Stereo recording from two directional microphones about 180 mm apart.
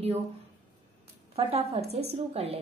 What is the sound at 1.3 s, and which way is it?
A woman's voice, 35° right (ahead or behind).